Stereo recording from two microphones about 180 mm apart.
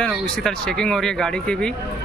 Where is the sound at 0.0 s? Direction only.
5° left (ahead or behind).